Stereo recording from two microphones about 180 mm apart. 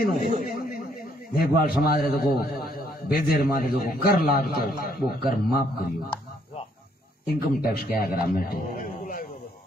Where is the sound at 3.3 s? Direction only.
55° left (ahead or behind).